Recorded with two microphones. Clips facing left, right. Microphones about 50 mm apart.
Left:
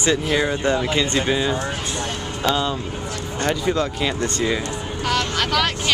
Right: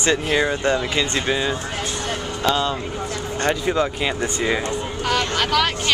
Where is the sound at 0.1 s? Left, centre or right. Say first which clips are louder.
Right 1 dB; centre.